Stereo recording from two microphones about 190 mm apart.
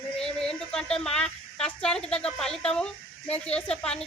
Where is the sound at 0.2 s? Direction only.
5° left (ahead or behind).